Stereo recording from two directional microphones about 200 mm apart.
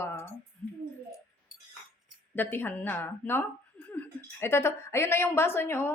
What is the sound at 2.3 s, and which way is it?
A woman's voice, 10° left (ahead or behind).